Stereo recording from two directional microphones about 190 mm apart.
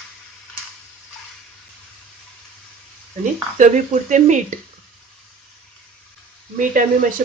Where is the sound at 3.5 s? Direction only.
40° right (ahead or behind).